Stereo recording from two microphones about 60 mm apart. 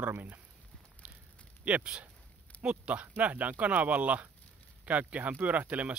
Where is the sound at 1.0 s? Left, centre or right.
Centre.